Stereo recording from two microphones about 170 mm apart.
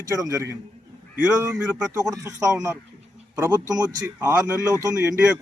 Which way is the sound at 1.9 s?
20° right (ahead or behind).